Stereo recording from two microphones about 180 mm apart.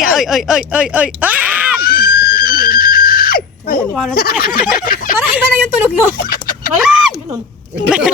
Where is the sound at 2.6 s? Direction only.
55° left (ahead or behind).